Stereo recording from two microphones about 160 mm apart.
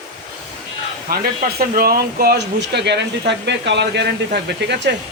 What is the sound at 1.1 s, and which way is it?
Speech, 70° right (ahead or behind).